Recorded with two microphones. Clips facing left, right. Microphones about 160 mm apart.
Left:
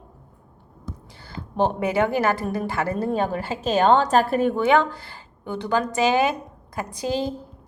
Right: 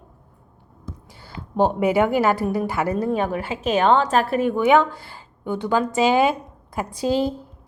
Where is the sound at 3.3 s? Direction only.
35° left (ahead or behind).